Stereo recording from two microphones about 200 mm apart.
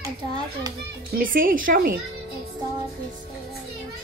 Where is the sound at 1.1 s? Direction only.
45° right (ahead or behind).